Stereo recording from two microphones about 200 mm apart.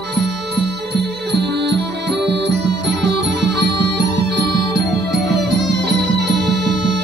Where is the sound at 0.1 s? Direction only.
55° right (ahead or behind).